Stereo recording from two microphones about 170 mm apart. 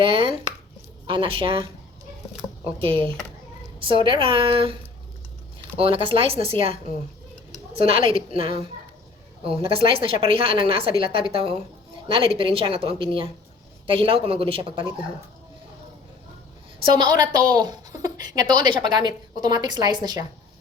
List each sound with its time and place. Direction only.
0.0 s a woman's voice: 30° right (ahead or behind)
2.7 s a woman's voice: 30° right (ahead or behind)
7.8 s a woman's voice: 35° right (ahead or behind)
17.5 s speech: 25° right (ahead or behind)